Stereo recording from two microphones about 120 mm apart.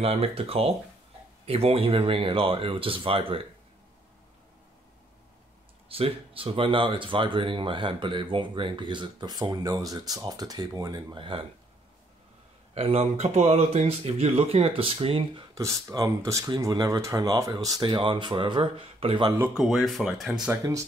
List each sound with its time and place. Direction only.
0.0 s speech: 55° right (ahead or behind)
5.9 s speech: 50° right (ahead or behind); by 11.1 s 30° right (ahead or behind)
11.1 s speech: 45° right (ahead or behind)
12.7 s speech: 60° right (ahead or behind)
15.5 s speech: 30° right (ahead or behind); by 19.2 s 50° right (ahead or behind)
19.5 s speech: centre (ahead or behind)